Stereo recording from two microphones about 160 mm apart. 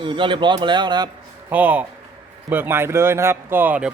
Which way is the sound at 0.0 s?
30° right (ahead or behind).